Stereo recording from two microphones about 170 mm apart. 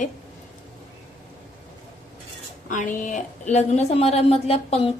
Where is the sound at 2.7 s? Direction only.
50° left (ahead or behind).